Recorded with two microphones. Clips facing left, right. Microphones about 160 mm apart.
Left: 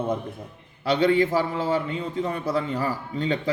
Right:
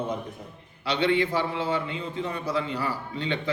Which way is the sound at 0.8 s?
45° left (ahead or behind).